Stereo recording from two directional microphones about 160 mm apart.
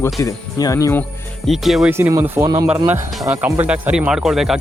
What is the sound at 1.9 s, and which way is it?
Speech, 15° right (ahead or behind).